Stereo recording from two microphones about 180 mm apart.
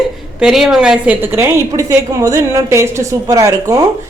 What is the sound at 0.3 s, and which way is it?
Speech, 5° right (ahead or behind).